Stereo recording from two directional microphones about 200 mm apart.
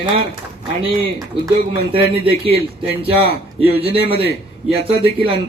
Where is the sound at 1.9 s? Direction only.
25° right (ahead or behind).